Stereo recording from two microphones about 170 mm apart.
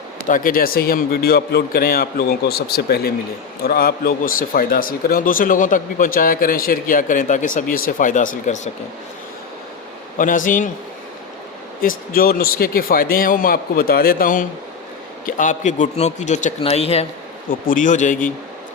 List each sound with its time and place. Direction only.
0.3 s a man's voice: 55° left (ahead or behind)
10.2 s speech: 50° left (ahead or behind)
11.8 s a man's voice: 55° left (ahead or behind); by 17.1 s 35° left (ahead or behind)
17.5 s speech: 55° left (ahead or behind)